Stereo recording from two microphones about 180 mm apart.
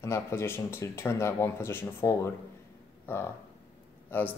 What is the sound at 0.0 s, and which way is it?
Speech, 15° left (ahead or behind).